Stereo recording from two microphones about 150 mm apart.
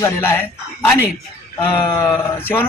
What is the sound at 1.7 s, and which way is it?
Speech, 15° left (ahead or behind).